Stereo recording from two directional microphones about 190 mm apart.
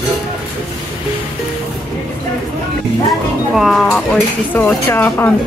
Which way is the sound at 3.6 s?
Centre (ahead or behind).